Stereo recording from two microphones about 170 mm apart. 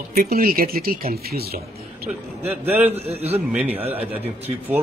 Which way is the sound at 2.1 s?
10° right (ahead or behind).